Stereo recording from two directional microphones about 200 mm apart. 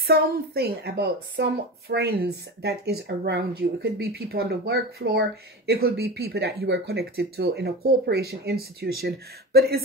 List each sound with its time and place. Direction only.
0.0 s speech: 50° right (ahead or behind)